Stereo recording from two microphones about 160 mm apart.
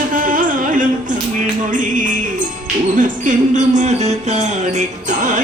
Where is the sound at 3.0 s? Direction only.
50° right (ahead or behind).